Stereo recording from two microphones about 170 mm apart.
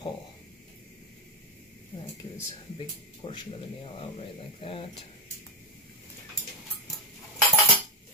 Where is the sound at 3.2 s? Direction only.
35° left (ahead or behind).